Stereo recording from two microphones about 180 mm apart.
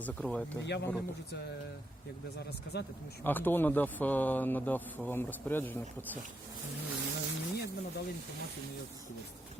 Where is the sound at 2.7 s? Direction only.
65° left (ahead or behind).